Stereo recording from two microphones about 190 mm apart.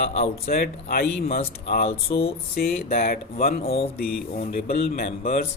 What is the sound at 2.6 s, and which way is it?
Speech, 50° left (ahead or behind).